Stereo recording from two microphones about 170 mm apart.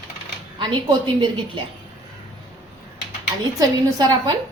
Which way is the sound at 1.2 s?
30° right (ahead or behind).